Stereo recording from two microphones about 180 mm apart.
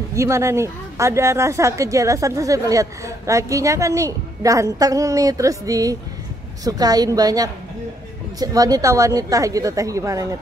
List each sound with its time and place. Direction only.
0.1 s a woman's voice: 15° right (ahead or behind)